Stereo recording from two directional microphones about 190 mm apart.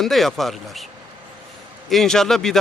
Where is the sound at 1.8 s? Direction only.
Centre (ahead or behind).